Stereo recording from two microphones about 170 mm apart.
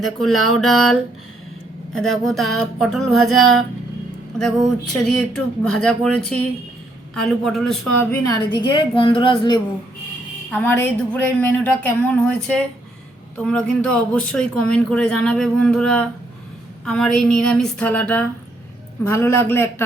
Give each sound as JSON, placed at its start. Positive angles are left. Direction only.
{"t": 0.0, "sound": "a man's voice", "side_deg": 0}
{"t": 4.9, "sound": "a man's voice", "side_deg": 0}
{"t": 8.1, "sound": "a woman's voice", "side_deg": 20}
{"t": 10.5, "sound": "a man's voice", "side_deg": 10}